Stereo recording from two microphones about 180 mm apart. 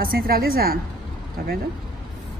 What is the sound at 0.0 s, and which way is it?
Speech, 55° right (ahead or behind).